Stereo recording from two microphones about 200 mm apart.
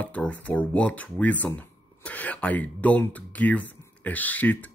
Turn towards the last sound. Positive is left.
turn(degrees=10)  # may be behind; listen again after turning